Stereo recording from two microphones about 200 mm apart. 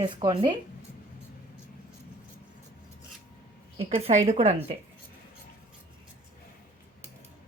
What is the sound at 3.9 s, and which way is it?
Speech, 30° right (ahead or behind).